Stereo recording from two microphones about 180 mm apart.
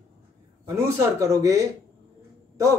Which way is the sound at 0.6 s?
15° right (ahead or behind).